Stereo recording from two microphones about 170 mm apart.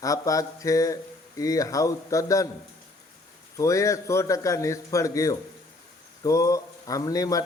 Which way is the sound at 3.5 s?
20° left (ahead or behind).